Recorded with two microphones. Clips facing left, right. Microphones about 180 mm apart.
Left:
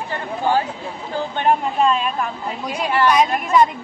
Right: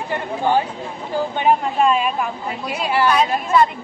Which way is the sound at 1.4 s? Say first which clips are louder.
Even; 10° right (ahead or behind).